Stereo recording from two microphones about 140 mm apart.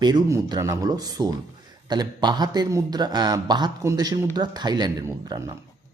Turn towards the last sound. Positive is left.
turn(degrees=-25)  # may be behind; listen again after turning